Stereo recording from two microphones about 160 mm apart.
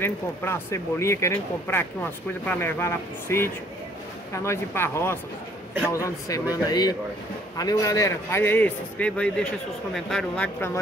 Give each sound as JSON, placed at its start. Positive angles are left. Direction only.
{"t": 0.0, "sound": "a man's voice", "side_deg": 15}